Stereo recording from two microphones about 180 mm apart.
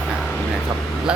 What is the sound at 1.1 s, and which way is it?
Speech, 5° right (ahead or behind).